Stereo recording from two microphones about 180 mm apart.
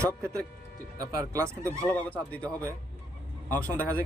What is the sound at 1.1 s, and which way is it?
Speech, 15° right (ahead or behind).